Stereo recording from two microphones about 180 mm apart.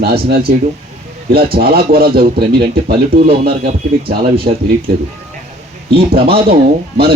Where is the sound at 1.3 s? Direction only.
55° right (ahead or behind).